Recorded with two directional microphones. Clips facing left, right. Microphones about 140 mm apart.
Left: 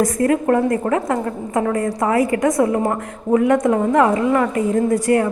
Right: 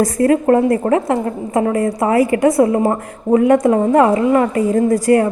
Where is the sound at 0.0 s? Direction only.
30° right (ahead or behind).